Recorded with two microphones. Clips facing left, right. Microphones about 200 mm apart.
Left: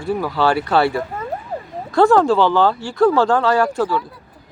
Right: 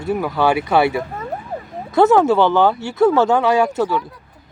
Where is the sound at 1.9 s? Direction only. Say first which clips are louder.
Right 1 dB; 20° right (ahead or behind).